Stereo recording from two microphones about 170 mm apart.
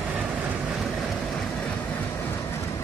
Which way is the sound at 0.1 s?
10° right (ahead or behind).